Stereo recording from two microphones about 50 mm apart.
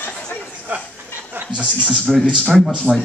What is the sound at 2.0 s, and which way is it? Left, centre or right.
Speech, centre.